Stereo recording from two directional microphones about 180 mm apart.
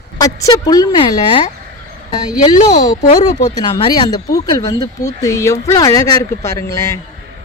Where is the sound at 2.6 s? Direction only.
40° left (ahead or behind).